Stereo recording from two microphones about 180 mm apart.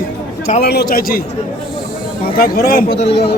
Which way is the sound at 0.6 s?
60° left (ahead or behind).